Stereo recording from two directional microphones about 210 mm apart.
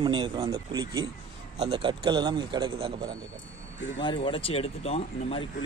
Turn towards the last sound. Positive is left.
turn(degrees=30)  # may be behind; listen again after turning